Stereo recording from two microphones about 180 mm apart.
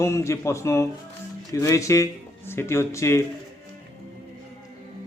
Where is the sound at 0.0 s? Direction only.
15° left (ahead or behind).